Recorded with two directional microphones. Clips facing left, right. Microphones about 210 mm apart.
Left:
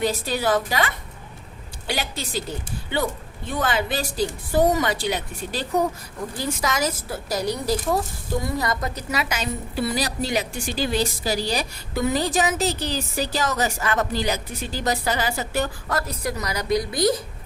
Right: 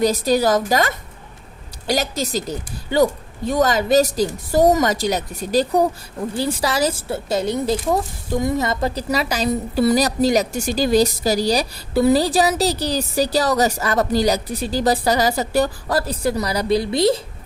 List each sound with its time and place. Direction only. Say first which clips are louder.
0.0 s a woman's voice: right 7 dB; 40° right (ahead or behind)